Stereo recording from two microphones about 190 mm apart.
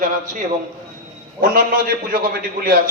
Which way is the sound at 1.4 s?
50° right (ahead or behind).